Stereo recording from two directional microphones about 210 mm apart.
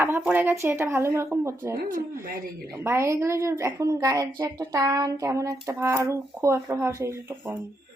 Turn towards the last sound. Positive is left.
turn(degrees=-10)  # may be behind; listen again after turning